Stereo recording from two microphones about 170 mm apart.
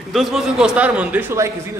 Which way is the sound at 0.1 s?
Centre (ahead or behind).